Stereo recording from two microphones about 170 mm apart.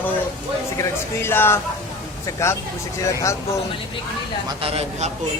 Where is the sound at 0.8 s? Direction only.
15° left (ahead or behind).